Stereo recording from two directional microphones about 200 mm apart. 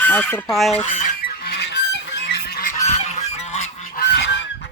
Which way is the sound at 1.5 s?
60° left (ahead or behind).